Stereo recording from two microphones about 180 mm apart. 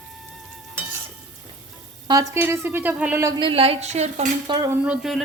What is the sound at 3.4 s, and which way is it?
Speech, 35° right (ahead or behind).